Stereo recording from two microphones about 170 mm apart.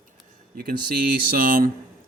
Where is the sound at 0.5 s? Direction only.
60° right (ahead or behind).